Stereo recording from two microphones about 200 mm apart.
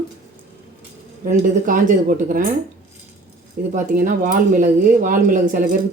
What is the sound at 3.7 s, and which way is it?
Speech, 40° right (ahead or behind).